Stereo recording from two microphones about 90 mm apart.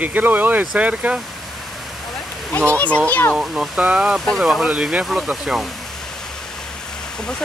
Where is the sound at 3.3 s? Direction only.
10° right (ahead or behind).